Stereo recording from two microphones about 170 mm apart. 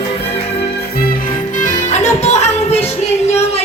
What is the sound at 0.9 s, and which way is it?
Music, 60° left (ahead or behind).